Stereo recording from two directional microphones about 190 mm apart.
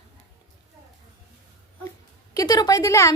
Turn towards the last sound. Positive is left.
turn(degrees=15)  # may be behind; listen again after turning